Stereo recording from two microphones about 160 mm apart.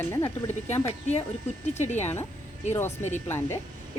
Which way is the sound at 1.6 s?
45° left (ahead or behind).